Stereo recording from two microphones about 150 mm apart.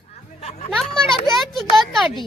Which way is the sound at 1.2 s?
Centre (ahead or behind).